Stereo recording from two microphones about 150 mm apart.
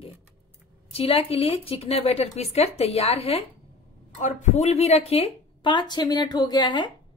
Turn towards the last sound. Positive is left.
turn(degrees=30)  # may be behind; listen again after turning